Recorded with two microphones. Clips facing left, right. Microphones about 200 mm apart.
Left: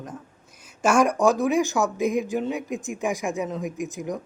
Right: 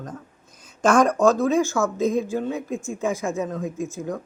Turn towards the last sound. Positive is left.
turn(degrees=15)  # may be behind; listen again after turning